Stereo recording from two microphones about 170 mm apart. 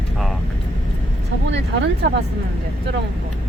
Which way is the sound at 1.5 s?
90° right.